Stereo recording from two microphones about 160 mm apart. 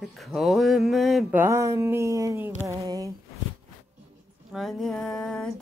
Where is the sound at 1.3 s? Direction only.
15° right (ahead or behind).